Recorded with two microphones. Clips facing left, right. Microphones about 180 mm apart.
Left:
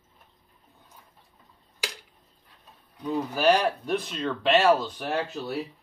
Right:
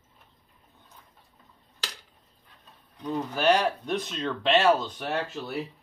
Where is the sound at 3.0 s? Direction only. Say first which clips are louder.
Left 2 dB; 5° left (ahead or behind).